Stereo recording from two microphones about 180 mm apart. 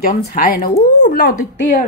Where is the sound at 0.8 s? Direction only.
65° left (ahead or behind).